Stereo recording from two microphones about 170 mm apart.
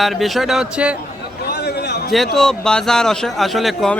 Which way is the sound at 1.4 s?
70° left (ahead or behind).